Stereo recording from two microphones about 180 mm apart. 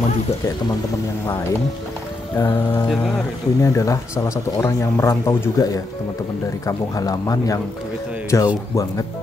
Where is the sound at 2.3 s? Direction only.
15° left (ahead or behind).